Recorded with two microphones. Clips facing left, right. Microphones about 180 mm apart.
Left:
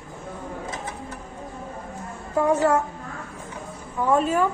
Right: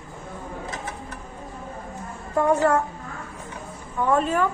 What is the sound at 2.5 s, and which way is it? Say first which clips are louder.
Speech: even; 10° left (ahead or behind).